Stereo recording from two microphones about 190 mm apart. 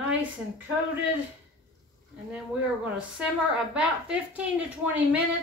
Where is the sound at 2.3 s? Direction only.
5° right (ahead or behind).